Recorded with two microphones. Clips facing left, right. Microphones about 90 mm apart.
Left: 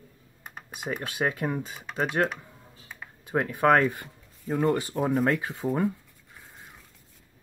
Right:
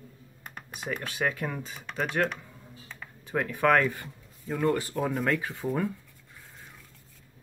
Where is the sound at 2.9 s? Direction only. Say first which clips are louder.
Left 3 dB; 15° left (ahead or behind).